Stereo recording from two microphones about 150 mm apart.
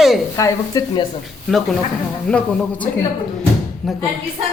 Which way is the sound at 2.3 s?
5° left (ahead or behind).